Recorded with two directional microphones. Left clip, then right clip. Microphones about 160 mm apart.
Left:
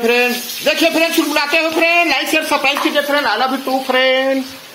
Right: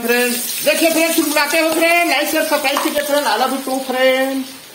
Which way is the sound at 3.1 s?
40° left (ahead or behind).